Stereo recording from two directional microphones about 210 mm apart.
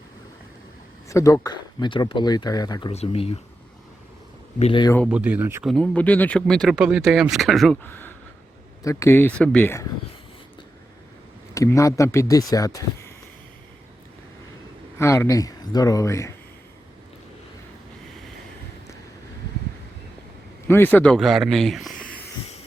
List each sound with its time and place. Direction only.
1.0 s speech: 15° left (ahead or behind)
2.9 s speech: 30° left (ahead or behind)
4.6 s speech: 20° left (ahead or behind)
5.0 s speech: 5° right (ahead or behind)
5.6 s speech: 5° left (ahead or behind)
11.5 s speech: 15° left (ahead or behind)
14.9 s speech: 10° left (ahead or behind)
20.7 s a man's voice: 10° left (ahead or behind)